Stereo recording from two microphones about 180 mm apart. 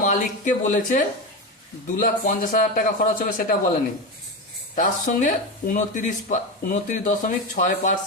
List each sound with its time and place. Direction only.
0.0 s speech: 45° left (ahead or behind)
4.7 s speech: 45° left (ahead or behind)